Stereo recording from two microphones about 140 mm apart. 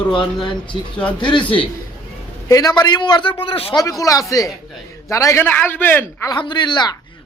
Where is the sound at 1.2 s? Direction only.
35° left (ahead or behind).